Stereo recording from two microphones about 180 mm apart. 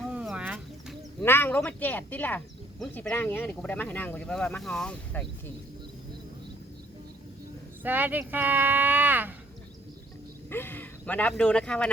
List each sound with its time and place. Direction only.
0.1 s a sound: 5° right (ahead or behind)
1.2 s speech: 10° left (ahead or behind)
7.9 s speech: 10° right (ahead or behind)
10.5 s speech: 10° left (ahead or behind)